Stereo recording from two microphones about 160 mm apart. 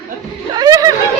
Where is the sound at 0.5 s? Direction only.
25° right (ahead or behind).